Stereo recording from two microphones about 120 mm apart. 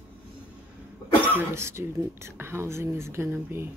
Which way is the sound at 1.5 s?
20° right (ahead or behind).